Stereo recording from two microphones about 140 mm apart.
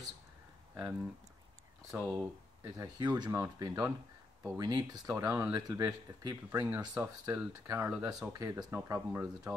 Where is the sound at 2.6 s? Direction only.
25° right (ahead or behind).